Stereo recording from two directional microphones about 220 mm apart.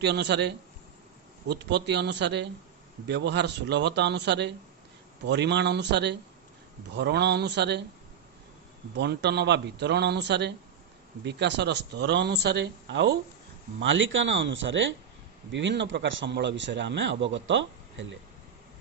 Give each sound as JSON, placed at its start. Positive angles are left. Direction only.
{"t": 0.0, "sound": "speech", "side_deg": -50}
{"t": 9.0, "sound": "speech", "side_deg": -50}